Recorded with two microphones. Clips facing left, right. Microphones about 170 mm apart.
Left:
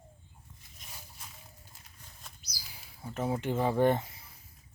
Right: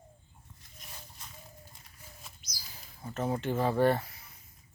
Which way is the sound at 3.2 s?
10° left (ahead or behind).